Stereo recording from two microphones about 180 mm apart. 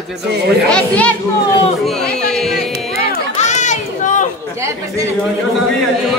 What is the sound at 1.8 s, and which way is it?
Music, 5° left (ahead or behind).